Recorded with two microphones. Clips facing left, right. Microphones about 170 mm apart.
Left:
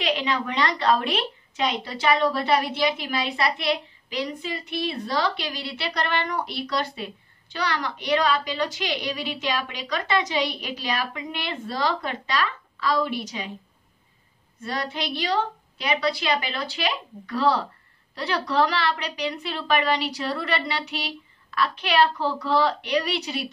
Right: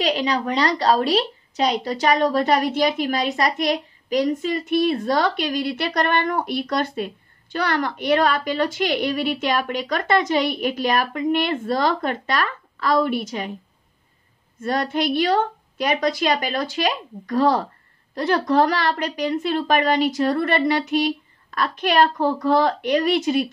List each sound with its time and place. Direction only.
0.0 s a woman's voice: 40° right (ahead or behind)
14.6 s a woman's voice: 50° right (ahead or behind)